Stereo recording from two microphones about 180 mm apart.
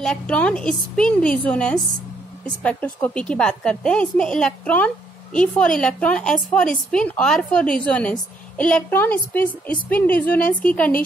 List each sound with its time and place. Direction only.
0.0 s a woman's voice: 5° left (ahead or behind)